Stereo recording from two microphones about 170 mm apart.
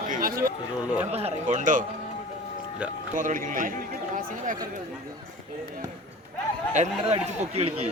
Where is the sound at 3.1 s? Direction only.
50° right (ahead or behind).